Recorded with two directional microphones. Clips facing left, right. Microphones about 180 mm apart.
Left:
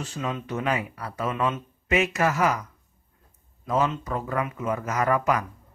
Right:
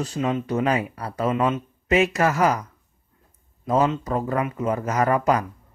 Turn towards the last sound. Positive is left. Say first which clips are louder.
# right 3 dB
turn(degrees=-35)  # may be behind; listen again after turning